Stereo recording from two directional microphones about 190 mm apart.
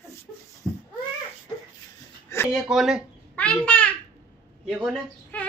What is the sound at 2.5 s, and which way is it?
A child's voice, 5° right (ahead or behind).